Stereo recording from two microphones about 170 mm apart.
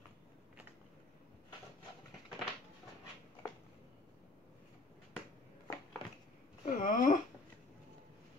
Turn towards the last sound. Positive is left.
turn(degrees=50)  # may be behind; listen again after turning